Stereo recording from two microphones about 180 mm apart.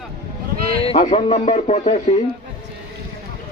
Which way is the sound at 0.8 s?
40° left (ahead or behind).